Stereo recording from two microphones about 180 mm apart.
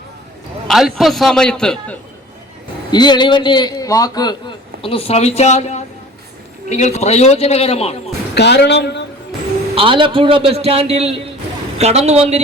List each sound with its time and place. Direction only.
0.7 s a man's voice: centre (ahead or behind)
2.9 s a man's voice: 25° left (ahead or behind)
8.4 s a woman's voice: 70° left (ahead or behind)
9.7 s a man's voice: 30° right (ahead or behind)